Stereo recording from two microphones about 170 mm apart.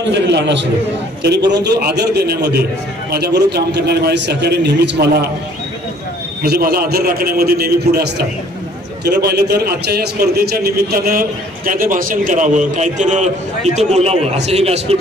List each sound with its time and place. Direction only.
0.1 s a man's voice: 90° right
1.5 s a man's voice: 80° right
6.4 s a man's voice: 65° right (ahead or behind); by 15.0 s 35° right (ahead or behind)